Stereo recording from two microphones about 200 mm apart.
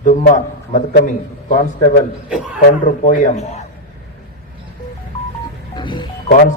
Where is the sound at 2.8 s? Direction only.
40° left (ahead or behind).